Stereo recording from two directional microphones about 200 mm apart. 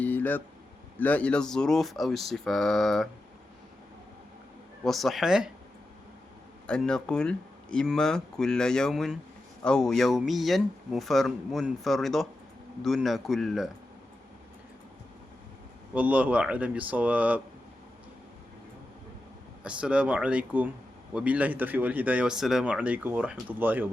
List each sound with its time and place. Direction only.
0.0 s a sound: 10° left (ahead or behind)
0.9 s speech: 10° left (ahead or behind)
4.8 s speech: centre (ahead or behind)
6.7 s speech: 5° left (ahead or behind)
16.0 s speech: 5° right (ahead or behind)
19.6 s speech: 5° right (ahead or behind)